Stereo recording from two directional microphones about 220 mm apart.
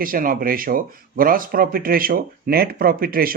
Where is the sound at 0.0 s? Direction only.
40° right (ahead or behind).